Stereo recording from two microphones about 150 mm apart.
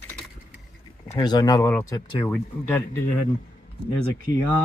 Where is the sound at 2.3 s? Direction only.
15° left (ahead or behind).